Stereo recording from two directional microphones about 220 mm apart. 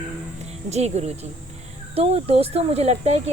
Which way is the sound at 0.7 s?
30° right (ahead or behind).